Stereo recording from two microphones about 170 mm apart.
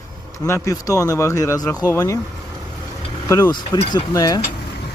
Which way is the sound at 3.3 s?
20° left (ahead or behind).